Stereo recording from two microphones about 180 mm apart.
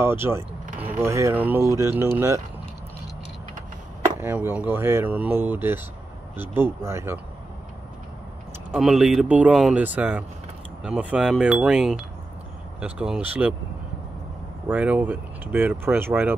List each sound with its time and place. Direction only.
0.0 s speech: 15° right (ahead or behind)
4.2 s speech: 10° right (ahead or behind)
8.7 s speech: centre (ahead or behind)
14.7 s speech: 10° right (ahead or behind)